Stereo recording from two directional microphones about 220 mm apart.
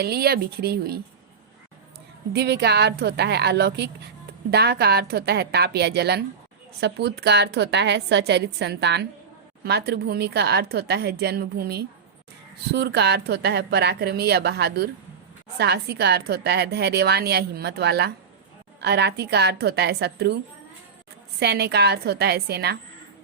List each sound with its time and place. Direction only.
0.0 s a woman's voice: 45° right (ahead or behind)
2.3 s a woman's voice: 50° right (ahead or behind)